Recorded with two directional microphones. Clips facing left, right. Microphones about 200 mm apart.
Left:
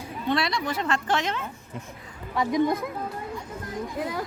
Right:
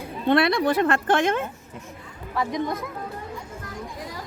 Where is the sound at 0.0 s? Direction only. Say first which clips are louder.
Right 6 dB; 55° right (ahead or behind).